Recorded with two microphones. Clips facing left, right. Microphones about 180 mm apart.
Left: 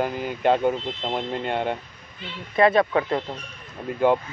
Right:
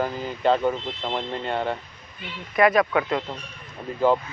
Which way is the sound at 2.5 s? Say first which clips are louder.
Left 1 dB; 30° left (ahead or behind).